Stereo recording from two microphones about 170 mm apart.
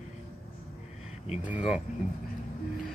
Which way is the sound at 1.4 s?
5° right (ahead or behind).